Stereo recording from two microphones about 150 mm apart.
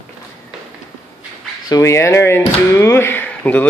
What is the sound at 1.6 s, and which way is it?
Speech, 20° left (ahead or behind).